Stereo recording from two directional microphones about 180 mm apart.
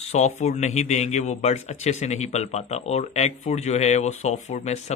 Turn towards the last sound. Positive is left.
turn(degrees=40)  # may be behind; listen again after turning